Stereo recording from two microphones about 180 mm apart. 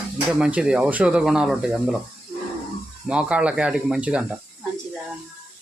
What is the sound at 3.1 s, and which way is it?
Speech, 5° right (ahead or behind).